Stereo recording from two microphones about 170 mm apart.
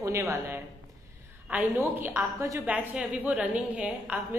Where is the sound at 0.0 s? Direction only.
15° right (ahead or behind).